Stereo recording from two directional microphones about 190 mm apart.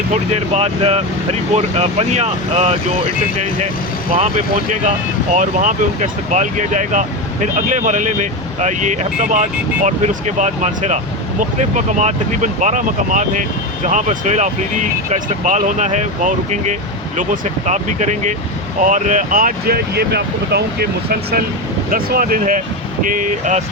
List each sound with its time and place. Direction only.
0.1 s speech: 35° right (ahead or behind)
4.7 s speech: 40° right (ahead or behind)